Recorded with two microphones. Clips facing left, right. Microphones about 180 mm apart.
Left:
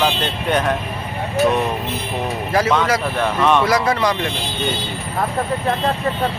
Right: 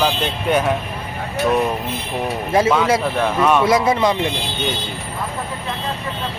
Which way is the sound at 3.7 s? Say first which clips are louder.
Right 2 dB; 25° right (ahead or behind).